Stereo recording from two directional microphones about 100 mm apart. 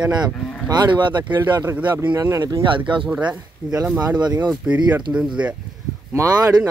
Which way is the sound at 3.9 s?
45° right (ahead or behind).